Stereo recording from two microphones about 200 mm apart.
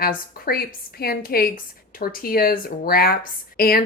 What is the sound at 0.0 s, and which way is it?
A woman's voice, 50° left (ahead or behind).